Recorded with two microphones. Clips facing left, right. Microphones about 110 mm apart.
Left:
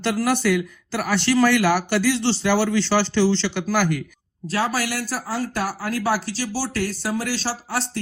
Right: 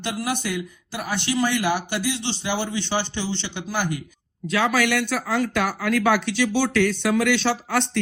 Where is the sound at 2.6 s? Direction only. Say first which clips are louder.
Left 6 dB; 85° left.